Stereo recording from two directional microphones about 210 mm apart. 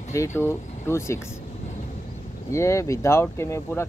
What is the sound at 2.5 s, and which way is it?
Speech, 15° left (ahead or behind).